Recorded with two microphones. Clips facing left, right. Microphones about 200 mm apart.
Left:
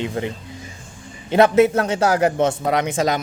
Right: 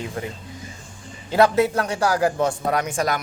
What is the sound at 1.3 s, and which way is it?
A man's voice, 20° left (ahead or behind).